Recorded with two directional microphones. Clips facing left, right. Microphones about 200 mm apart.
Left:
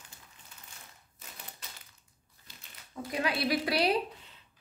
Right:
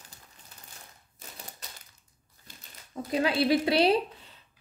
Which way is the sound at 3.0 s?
25° right (ahead or behind).